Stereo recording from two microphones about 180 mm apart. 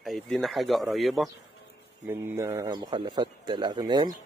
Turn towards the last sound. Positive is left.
turn(degrees=-25)  # may be behind; listen again after turning